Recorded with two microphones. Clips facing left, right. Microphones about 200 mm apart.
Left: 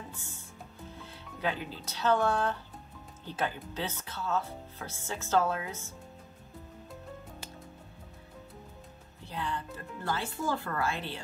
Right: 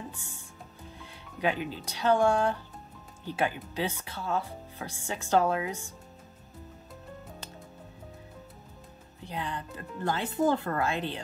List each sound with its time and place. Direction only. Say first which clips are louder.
0.1 s music: even; 15° right (ahead or behind)
1.4 s speech: right 4 dB; 15° right (ahead or behind)
9.2 s speech: right 1 dB; 15° right (ahead or behind)